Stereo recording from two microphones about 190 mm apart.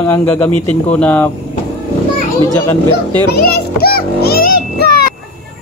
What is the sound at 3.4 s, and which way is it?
Music, 50° left (ahead or behind).